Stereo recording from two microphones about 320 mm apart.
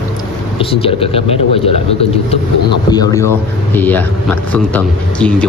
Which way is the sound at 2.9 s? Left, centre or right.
Centre.